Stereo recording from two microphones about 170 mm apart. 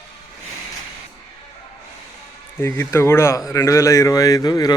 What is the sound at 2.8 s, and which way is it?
Speech, 15° left (ahead or behind).